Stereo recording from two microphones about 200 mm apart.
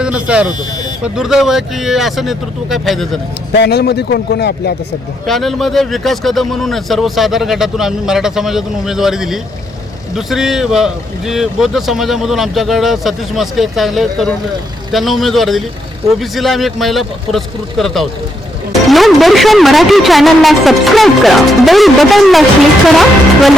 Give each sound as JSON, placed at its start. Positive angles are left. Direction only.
{"t": 0.0, "sound": "buzzer", "side_deg": -5}
{"t": 0.6, "sound": "buzzer", "side_deg": 20}
{"t": 1.0, "sound": "a man's voice", "side_deg": -5}
{"t": 3.5, "sound": "a man's voice", "side_deg": 55}
{"t": 5.2, "sound": "a man's voice", "side_deg": 0}